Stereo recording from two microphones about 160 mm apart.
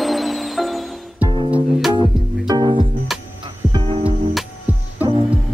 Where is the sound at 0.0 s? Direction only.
Centre (ahead or behind).